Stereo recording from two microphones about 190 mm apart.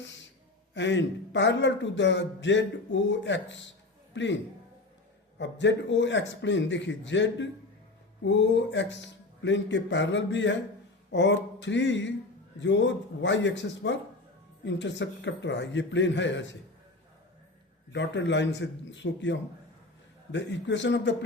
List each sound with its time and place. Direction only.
0.0 s a sound: 70° left (ahead or behind)
0.7 s a man's voice: 70° left (ahead or behind)
5.4 s speech: 70° left (ahead or behind)
17.9 s speech: 70° left (ahead or behind)